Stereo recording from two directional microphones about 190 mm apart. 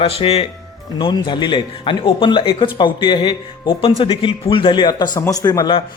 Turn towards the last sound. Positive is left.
turn(degrees=20)  # may be behind; listen again after turning